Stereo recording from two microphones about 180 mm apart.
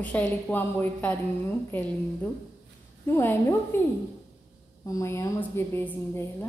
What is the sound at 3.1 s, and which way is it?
Speech, 15° left (ahead or behind).